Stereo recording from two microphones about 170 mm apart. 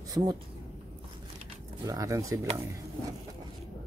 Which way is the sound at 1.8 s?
20° right (ahead or behind).